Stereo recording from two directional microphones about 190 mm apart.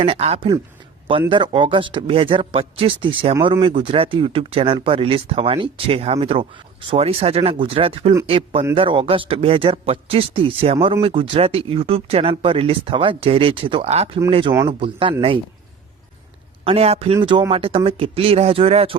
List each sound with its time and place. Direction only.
0.0 s speech: 30° right (ahead or behind)
16.6 s speech: 30° right (ahead or behind)